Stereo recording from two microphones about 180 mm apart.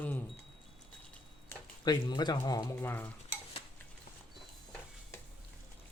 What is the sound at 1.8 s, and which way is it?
Speech, 25° left (ahead or behind).